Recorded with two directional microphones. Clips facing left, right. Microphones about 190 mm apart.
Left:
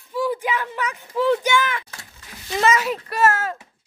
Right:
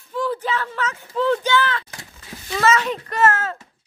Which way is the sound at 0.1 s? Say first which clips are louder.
Even; 10° left (ahead or behind).